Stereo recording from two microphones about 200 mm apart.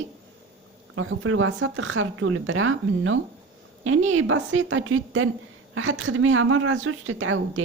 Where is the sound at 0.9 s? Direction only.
90° right.